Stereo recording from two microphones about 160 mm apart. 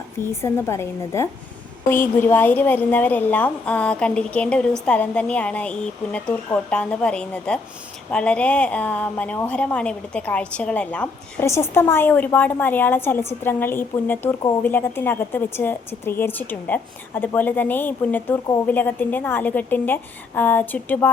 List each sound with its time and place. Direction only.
0.2 s a woman's voice: 15° left (ahead or behind)